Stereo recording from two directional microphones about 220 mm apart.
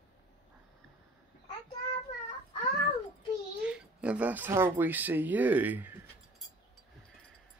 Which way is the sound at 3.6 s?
5° right (ahead or behind).